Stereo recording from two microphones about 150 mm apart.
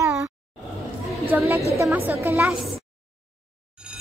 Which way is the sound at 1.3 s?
15° right (ahead or behind).